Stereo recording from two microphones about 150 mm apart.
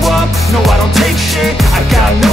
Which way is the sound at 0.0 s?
Centre (ahead or behind).